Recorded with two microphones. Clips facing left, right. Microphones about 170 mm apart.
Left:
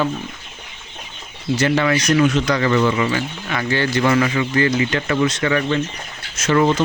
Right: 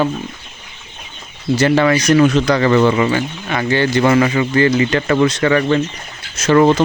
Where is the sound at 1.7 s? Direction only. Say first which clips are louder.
Right 5 dB; 45° right (ahead or behind).